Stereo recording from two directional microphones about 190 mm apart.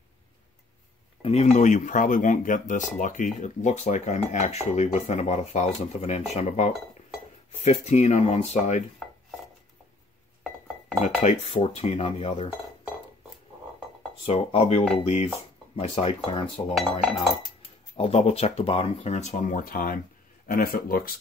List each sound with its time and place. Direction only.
1.2 s speech: 35° left (ahead or behind)
11.2 s speech: 35° left (ahead or behind)
14.2 s speech: 35° left (ahead or behind)
16.3 s cutlery: 30° left (ahead or behind)
17.0 s speech: centre (ahead or behind)
17.9 s speech: 30° left (ahead or behind); by 21.1 s 50° left (ahead or behind)